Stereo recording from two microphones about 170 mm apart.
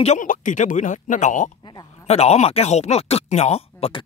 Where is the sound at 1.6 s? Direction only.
25° left (ahead or behind).